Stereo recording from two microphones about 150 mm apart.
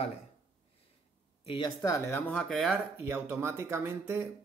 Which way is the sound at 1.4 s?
40° left (ahead or behind).